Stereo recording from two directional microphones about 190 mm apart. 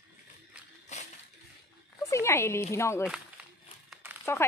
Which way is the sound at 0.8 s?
40° left (ahead or behind).